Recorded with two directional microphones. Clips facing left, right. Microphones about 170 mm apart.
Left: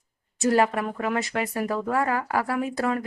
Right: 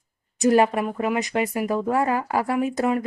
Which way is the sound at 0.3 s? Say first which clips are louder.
Right 3 dB; 20° right (ahead or behind).